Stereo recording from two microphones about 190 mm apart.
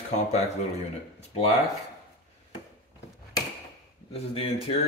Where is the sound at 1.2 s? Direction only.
35° left (ahead or behind).